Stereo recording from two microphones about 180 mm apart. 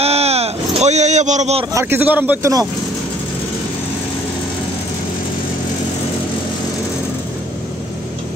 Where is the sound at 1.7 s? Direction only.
10° right (ahead or behind).